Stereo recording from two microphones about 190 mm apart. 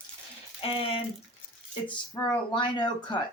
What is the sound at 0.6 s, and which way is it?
Speech, 30° left (ahead or behind).